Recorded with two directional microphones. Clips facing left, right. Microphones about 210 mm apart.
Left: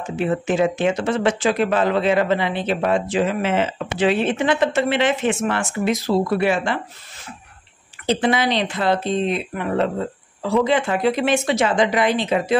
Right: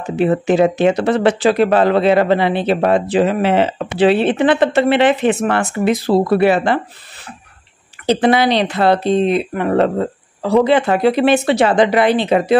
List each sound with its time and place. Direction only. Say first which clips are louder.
0.0 s speech: right 6 dB; 35° right (ahead or behind)
4.5 s speech: right 6 dB; 60° right (ahead or behind)
8.2 s speech: right 7 dB; 65° right (ahead or behind)